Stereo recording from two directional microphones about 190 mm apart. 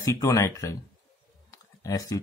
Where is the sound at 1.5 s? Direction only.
20° left (ahead or behind).